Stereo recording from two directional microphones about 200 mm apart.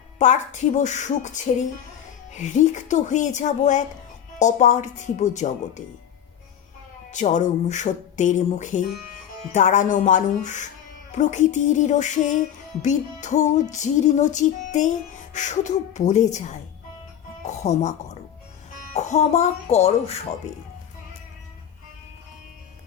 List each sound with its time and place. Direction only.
0.2 s music: 35° left (ahead or behind)
7.1 s music: 40° left (ahead or behind)